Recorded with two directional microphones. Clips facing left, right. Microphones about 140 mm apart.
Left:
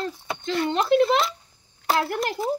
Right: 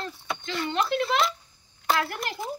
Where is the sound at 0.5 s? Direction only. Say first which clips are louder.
Left 7 dB; 35° left (ahead or behind).